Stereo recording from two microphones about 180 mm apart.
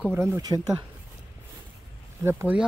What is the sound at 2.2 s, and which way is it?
Speech, 10° right (ahead or behind).